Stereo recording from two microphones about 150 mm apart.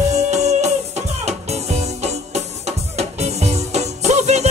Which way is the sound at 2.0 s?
45° right (ahead or behind).